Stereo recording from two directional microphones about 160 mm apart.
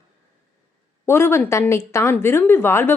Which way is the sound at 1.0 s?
15° left (ahead or behind).